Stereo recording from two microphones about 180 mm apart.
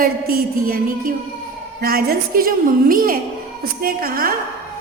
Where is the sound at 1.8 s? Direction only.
55° right (ahead or behind).